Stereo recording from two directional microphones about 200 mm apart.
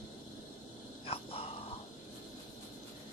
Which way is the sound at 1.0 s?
30° left (ahead or behind).